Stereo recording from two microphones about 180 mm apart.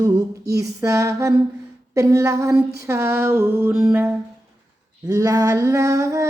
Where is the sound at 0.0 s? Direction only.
20° right (ahead or behind); by 4.0 s centre (ahead or behind).